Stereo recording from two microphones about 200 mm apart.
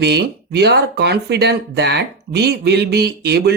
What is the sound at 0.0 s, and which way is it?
Speech, 55° right (ahead or behind).